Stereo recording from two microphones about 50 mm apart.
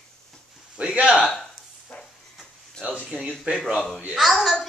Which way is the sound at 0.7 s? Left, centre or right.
Right.